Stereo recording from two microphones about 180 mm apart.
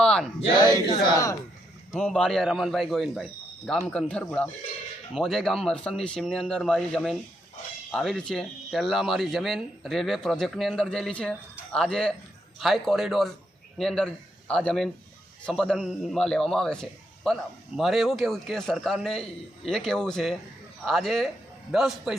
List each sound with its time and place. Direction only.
0.0 s a sound: 5° left (ahead or behind)
0.9 s speech: 20° left (ahead or behind)
1.9 s a man's voice: centre (ahead or behind)